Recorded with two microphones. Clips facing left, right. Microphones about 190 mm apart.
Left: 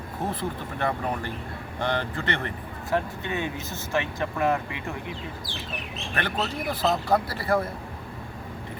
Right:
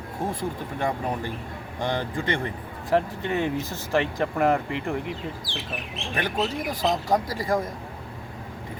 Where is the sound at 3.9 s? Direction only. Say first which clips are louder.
Right 4 dB; 35° right (ahead or behind).